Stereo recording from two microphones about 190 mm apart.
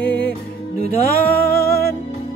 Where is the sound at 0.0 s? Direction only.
60° left (ahead or behind).